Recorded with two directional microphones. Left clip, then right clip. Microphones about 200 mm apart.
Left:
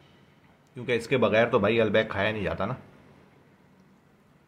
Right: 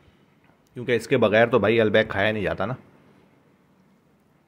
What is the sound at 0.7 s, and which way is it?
Speech, 40° right (ahead or behind).